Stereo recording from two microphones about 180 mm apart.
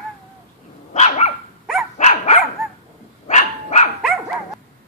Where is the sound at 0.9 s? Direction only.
40° left (ahead or behind).